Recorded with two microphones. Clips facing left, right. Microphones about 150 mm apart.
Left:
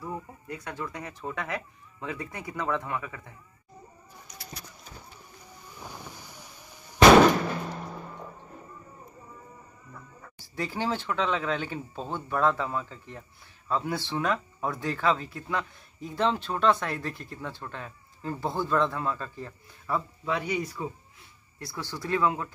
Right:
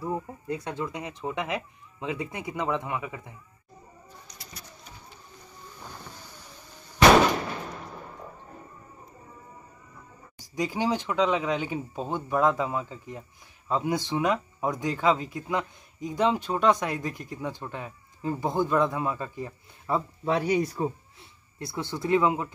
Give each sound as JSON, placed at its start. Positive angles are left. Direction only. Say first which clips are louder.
{"t": 0.0, "sound": "speech", "louder": "right 5 dB", "side_deg": -25}
{"t": 5.7, "sound": "a sound", "louder": "left 2 dB", "side_deg": 15}
{"t": 10.4, "sound": "speech", "louder": "right 3 dB", "side_deg": -15}
{"t": 20.2, "sound": "speech", "louder": "right 6 dB", "side_deg": -35}
{"t": 21.5, "sound": "speech", "louder": "right 4 dB", "side_deg": -20}